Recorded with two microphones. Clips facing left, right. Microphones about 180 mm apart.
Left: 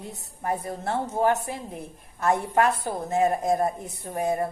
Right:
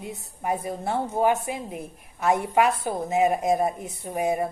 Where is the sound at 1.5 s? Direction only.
15° right (ahead or behind).